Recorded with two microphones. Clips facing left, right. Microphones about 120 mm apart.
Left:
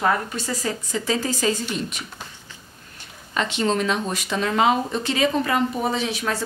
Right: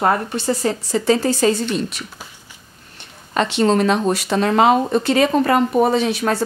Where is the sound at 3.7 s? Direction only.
50° right (ahead or behind).